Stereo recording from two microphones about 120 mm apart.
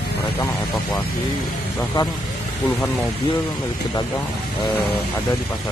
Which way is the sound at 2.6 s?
15° left (ahead or behind).